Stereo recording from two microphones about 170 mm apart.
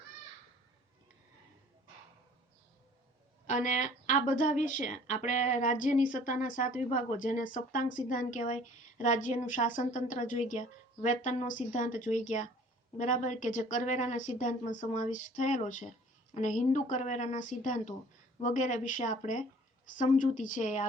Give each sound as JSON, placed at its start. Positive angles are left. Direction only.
{"t": 3.4, "sound": "a woman's voice", "side_deg": 45}